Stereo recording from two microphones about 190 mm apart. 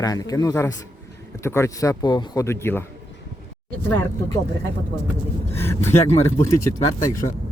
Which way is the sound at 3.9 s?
10° left (ahead or behind).